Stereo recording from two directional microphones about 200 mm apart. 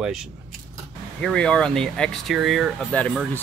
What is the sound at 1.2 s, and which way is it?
Speech, 5° left (ahead or behind).